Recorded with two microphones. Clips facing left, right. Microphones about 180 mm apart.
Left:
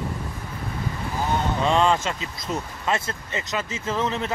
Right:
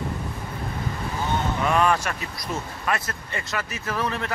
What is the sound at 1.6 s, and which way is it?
Speech, 25° left (ahead or behind).